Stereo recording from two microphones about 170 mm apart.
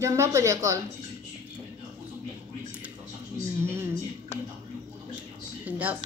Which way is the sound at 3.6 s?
15° right (ahead or behind).